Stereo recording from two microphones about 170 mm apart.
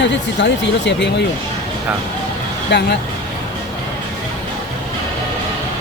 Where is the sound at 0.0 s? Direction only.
90° left.